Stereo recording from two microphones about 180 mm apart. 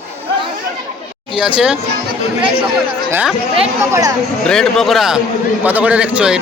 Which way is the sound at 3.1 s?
10° right (ahead or behind).